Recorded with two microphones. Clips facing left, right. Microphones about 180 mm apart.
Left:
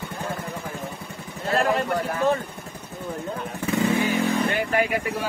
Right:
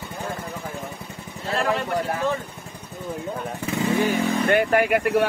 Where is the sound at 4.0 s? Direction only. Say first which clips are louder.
Right 1 dB; 55° right (ahead or behind).